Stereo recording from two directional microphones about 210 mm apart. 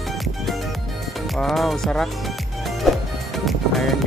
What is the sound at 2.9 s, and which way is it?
Music, centre (ahead or behind).